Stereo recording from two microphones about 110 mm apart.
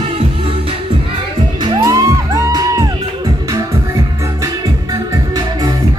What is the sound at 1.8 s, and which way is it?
Music, 30° right (ahead or behind).